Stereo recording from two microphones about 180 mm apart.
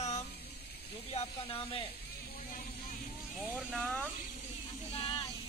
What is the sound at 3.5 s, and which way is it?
Speech, 5° left (ahead or behind).